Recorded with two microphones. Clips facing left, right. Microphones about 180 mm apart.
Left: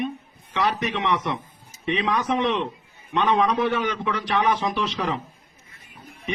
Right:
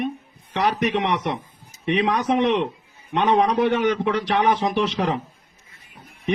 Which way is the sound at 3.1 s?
45° right (ahead or behind).